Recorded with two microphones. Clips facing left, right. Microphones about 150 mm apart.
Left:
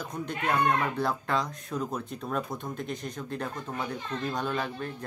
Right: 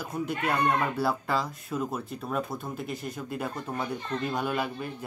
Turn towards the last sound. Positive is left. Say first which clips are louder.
# right 1 dB
turn(degrees=-10)  # may be behind; listen again after turning